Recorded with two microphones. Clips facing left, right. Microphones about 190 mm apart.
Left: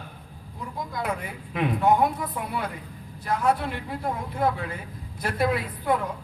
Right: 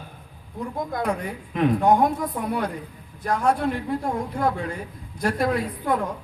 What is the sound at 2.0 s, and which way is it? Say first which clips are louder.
Speech: right 4 dB; 45° right (ahead or behind).